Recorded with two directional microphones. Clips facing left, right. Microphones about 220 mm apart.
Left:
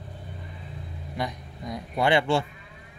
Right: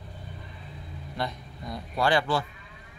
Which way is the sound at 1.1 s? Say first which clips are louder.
Left 1 dB; 15° left (ahead or behind).